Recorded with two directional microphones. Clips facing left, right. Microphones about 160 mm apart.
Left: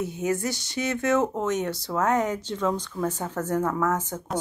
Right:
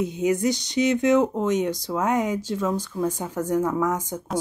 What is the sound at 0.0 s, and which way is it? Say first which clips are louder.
Speech: right 4 dB; 15° right (ahead or behind).